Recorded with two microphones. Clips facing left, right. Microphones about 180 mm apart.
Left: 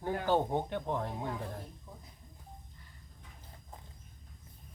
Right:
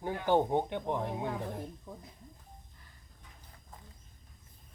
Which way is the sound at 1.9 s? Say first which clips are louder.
Right 6 dB; 60° right (ahead or behind).